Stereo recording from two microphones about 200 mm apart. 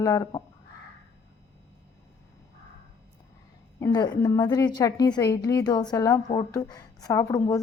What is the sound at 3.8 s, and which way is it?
A woman's voice, 20° left (ahead or behind).